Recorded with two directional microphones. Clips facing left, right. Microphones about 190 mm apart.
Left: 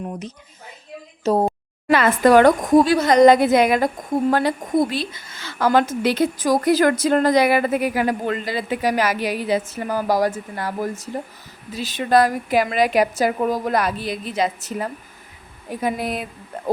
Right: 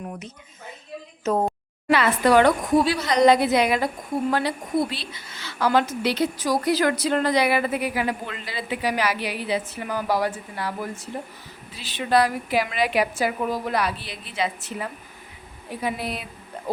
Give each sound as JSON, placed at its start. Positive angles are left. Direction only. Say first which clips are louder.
{"t": 1.2, "sound": "a woman's voice", "louder": "left 4 dB", "side_deg": 35}